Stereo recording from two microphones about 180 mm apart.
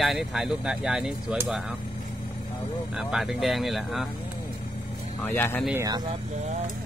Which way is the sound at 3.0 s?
Centre (ahead or behind).